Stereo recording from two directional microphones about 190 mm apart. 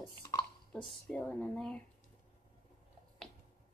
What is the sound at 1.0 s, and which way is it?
Speech, 10° left (ahead or behind).